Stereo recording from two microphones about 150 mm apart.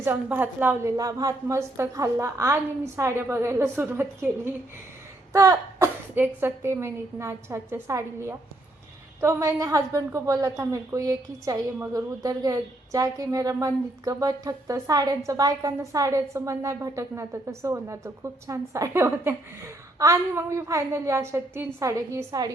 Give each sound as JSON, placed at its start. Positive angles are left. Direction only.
{"t": 0.0, "sound": "a woman's voice", "side_deg": -15}